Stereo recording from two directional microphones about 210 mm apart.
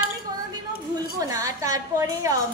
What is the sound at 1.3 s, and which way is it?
A woman's voice, 15° right (ahead or behind).